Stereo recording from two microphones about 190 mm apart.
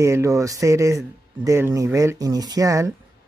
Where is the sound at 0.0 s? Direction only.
15° right (ahead or behind).